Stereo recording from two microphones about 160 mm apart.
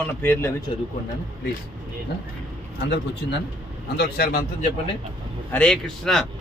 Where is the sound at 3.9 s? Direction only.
80° left.